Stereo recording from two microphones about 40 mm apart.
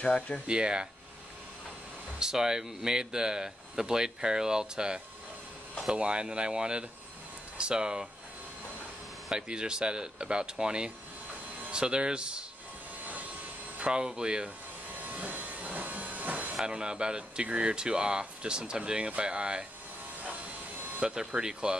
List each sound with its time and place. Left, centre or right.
0.5 s speech: right
2.1 s speech: centre
9.3 s speech: right
13.7 s a sound: right
14.0 s speech: right
15.0 s a sound: right
16.6 s speech: right
21.0 s speech: right